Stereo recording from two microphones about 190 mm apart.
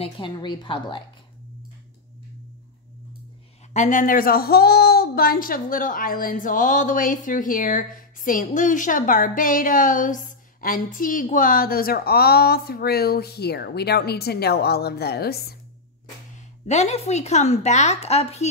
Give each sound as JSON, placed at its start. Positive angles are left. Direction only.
{"t": 0.0, "sound": "a woman's voice", "side_deg": 25}
{"t": 3.7, "sound": "a woman's voice", "side_deg": 40}
{"t": 16.6, "sound": "a woman's voice", "side_deg": 35}